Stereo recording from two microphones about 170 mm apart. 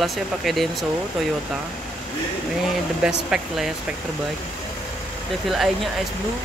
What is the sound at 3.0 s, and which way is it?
Speech, 5° right (ahead or behind).